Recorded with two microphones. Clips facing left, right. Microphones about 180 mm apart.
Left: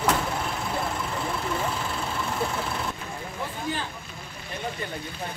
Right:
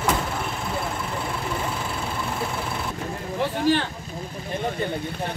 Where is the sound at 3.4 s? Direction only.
75° right (ahead or behind).